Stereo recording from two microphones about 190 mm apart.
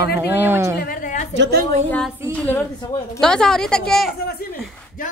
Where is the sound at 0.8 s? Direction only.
45° left (ahead or behind).